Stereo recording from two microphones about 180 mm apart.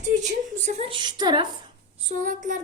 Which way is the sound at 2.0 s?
45° right (ahead or behind).